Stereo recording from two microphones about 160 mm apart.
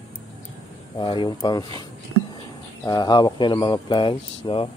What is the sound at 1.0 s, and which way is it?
Speech, 30° left (ahead or behind).